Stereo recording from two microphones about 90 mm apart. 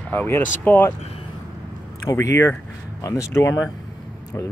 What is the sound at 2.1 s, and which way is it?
Speech, 35° left (ahead or behind).